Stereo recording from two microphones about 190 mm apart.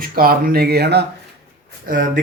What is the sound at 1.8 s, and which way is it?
Speech, 45° right (ahead or behind).